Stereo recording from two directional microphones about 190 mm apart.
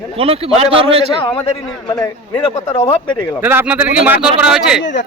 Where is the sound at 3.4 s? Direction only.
10° right (ahead or behind).